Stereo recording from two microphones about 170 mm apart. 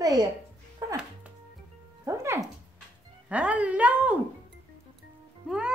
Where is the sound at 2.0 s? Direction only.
15° right (ahead or behind).